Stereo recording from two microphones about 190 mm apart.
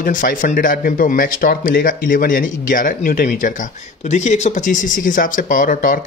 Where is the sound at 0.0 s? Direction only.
45° left (ahead or behind).